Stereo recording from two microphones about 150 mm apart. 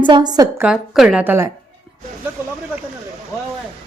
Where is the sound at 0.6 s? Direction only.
5° right (ahead or behind).